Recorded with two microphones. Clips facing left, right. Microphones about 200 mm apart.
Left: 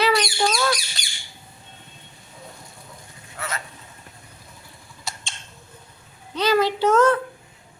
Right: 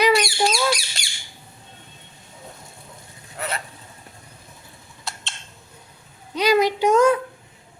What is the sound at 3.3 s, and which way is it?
Vehicle, 30° right (ahead or behind).